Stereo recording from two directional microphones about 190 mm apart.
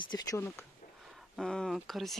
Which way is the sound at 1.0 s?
Centre (ahead or behind).